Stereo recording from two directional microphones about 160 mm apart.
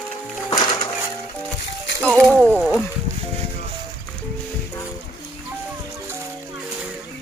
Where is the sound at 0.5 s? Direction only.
25° left (ahead or behind).